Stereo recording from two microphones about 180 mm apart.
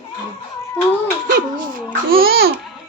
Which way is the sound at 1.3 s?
50° right (ahead or behind).